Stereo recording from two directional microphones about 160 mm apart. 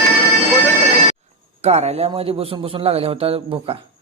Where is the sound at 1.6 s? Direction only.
40° right (ahead or behind).